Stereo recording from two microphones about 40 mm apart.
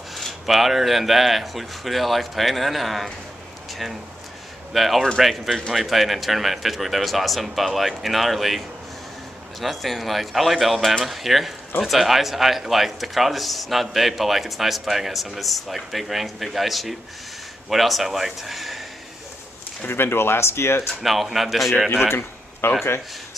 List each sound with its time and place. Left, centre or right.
0.5 s speech: centre
4.7 s speech: centre
19.9 s speech: left
21.0 s speech: centre
21.9 s speech: left